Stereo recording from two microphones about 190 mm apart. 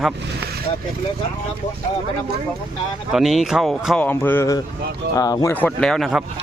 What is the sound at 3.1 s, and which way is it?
Speech, centre (ahead or behind).